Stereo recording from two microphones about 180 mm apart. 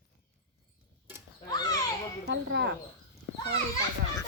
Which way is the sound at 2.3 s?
70° right (ahead or behind).